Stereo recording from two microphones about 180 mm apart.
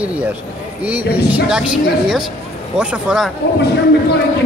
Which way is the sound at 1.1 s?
5° right (ahead or behind).